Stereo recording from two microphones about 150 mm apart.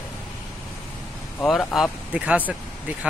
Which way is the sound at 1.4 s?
Centre (ahead or behind).